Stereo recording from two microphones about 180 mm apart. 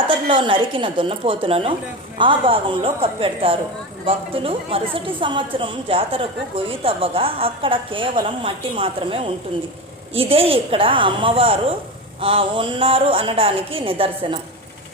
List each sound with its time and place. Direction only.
0.1 s a woman's voice: 30° right (ahead or behind)